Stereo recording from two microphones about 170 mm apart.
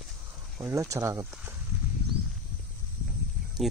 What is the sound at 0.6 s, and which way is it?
Speech, 20° right (ahead or behind).